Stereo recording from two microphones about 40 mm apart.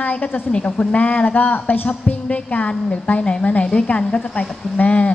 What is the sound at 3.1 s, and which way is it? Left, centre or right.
A woman's voice, left.